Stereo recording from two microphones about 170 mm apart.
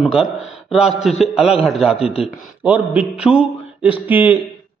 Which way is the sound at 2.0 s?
35° left (ahead or behind).